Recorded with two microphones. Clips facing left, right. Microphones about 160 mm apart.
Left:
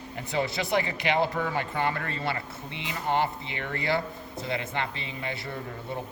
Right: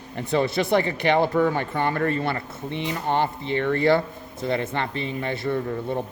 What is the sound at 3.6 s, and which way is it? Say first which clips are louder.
Speech: right 8 dB; 55° right (ahead or behind).